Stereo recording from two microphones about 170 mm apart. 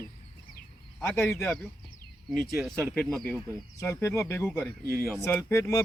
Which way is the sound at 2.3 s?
Centre (ahead or behind).